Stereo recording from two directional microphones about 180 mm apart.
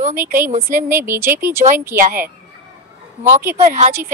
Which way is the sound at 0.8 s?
15° right (ahead or behind).